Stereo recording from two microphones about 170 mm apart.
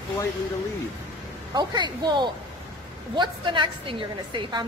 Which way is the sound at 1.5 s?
25° right (ahead or behind).